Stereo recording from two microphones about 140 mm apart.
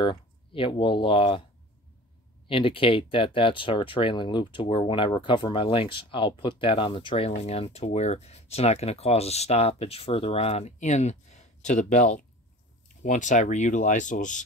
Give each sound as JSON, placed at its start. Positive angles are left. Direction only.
{"t": 0.0, "sound": "speech", "side_deg": 35}
{"t": 2.4, "sound": "speech", "side_deg": 40}